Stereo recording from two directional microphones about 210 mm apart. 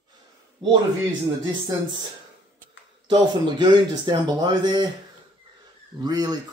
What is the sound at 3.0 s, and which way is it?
Speech, 20° right (ahead or behind).